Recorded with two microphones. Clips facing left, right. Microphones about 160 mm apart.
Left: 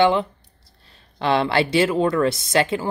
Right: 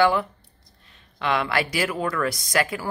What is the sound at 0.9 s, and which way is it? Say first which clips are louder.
Speech: left 4 dB; 35° left (ahead or behind).